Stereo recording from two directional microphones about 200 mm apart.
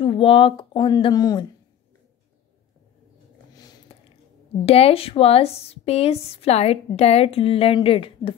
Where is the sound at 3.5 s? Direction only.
20° left (ahead or behind).